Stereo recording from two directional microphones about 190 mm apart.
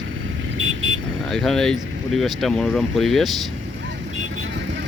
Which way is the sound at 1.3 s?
Centre (ahead or behind).